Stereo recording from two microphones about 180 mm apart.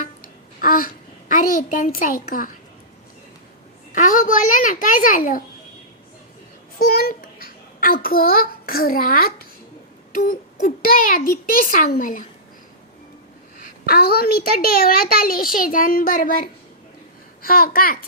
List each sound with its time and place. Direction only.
0.6 s a sound: 50° left (ahead or behind)
1.3 s a child's voice: 50° left (ahead or behind)
3.9 s a child's voice: 45° left (ahead or behind)
6.7 s a child's voice: 50° left (ahead or behind)
13.6 s a child's voice: 60° left (ahead or behind)